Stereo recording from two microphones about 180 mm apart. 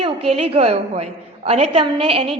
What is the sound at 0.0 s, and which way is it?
A woman's voice, 35° right (ahead or behind).